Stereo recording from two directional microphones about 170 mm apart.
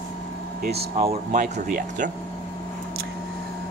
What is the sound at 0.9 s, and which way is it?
Speech, 45° right (ahead or behind).